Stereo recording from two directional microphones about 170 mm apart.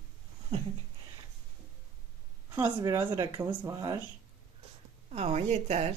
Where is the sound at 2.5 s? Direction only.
20° right (ahead or behind).